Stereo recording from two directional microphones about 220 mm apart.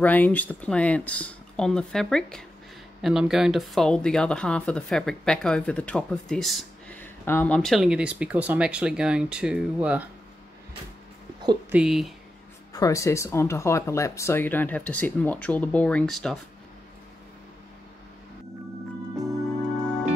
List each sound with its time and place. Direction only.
0.0 s speech: 5° left (ahead or behind)
11.7 s speech: 5° right (ahead or behind)
12.7 s speech: 15° left (ahead or behind)